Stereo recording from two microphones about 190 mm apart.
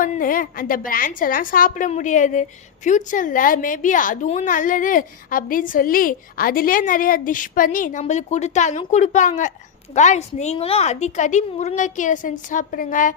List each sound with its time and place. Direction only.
0.0 s a woman's voice: 45° left (ahead or behind)